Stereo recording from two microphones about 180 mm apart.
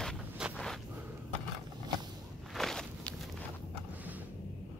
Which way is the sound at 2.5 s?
Centre (ahead or behind).